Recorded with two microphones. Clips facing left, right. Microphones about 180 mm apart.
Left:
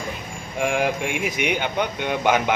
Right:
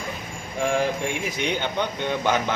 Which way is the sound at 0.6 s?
15° left (ahead or behind).